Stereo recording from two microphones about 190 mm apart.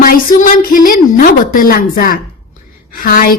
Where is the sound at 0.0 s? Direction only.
45° left (ahead or behind).